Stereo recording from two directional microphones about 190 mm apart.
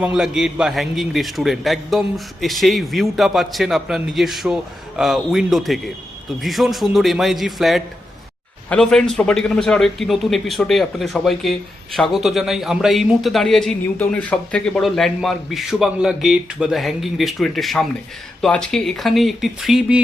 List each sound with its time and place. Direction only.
0.0 s a man's voice: 5° right (ahead or behind)